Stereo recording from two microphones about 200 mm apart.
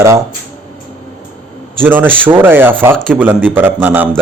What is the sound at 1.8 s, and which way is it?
A man's voice, 10° right (ahead or behind).